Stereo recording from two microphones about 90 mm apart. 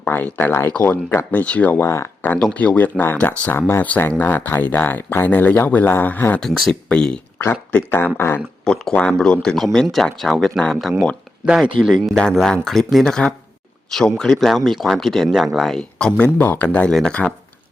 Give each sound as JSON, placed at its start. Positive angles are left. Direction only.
{"t": 0.1, "sound": "speech", "side_deg": 20}
{"t": 1.9, "sound": "speech", "side_deg": 30}
{"t": 2.4, "sound": "speech", "side_deg": 15}
{"t": 6.4, "sound": "speech", "side_deg": 5}
{"t": 7.3, "sound": "speech", "side_deg": 20}
{"t": 8.6, "sound": "speech", "side_deg": 10}
{"t": 11.4, "sound": "speech", "side_deg": -10}
{"t": 12.1, "sound": "speech", "side_deg": 5}